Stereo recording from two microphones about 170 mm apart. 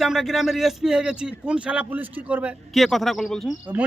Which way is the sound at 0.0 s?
Centre (ahead or behind).